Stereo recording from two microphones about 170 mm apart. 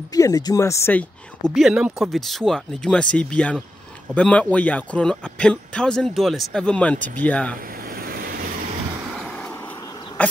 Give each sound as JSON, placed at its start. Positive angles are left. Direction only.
{"t": 0.1, "sound": "speech", "side_deg": 20}
{"t": 1.5, "sound": "speech", "side_deg": -5}
{"t": 7.6, "sound": "vehicle", "side_deg": -60}
{"t": 9.1, "sound": "vehicle", "side_deg": 5}